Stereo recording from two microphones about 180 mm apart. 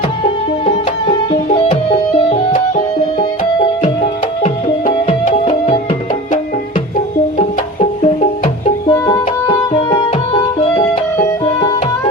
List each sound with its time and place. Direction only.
0.6 s music: 30° left (ahead or behind)
2.3 s music: 45° left (ahead or behind)
3.2 s music: 30° left (ahead or behind)
6.9 s music: 40° left (ahead or behind)
8.9 s music: 20° left (ahead or behind)